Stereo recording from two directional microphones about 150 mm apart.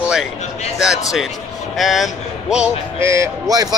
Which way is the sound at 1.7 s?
Centre (ahead or behind).